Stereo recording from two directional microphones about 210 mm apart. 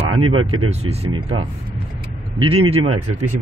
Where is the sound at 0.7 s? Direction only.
30° right (ahead or behind).